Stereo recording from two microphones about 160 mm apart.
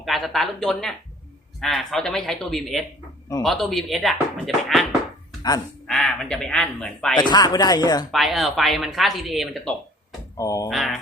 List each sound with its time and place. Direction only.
0.0 s speech: centre (ahead or behind)
5.9 s speech: 5° left (ahead or behind)
7.2 s speech: 25° left (ahead or behind)
8.1 s speech: centre (ahead or behind)
10.3 s speech: 20° left (ahead or behind)
10.7 s speech: centre (ahead or behind)